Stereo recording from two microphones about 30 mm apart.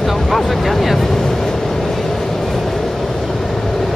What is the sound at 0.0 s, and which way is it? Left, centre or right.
Vehicle, centre.